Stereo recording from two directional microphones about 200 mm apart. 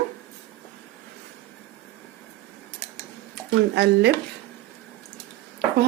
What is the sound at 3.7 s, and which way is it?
Speech, 60° right (ahead or behind).